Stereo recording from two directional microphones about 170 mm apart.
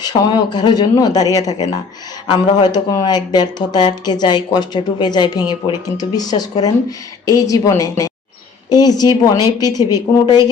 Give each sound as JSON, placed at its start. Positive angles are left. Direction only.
{"t": 0.0, "sound": "speech", "side_deg": 25}